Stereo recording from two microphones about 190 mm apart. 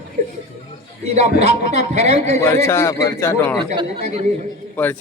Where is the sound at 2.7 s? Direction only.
15° left (ahead or behind).